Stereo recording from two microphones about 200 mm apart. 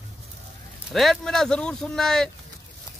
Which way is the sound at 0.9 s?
Centre (ahead or behind).